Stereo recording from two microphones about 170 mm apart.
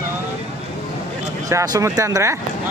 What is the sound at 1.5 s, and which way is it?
Speech, 20° right (ahead or behind).